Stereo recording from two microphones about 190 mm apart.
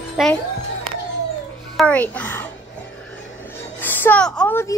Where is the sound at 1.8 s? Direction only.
5° left (ahead or behind).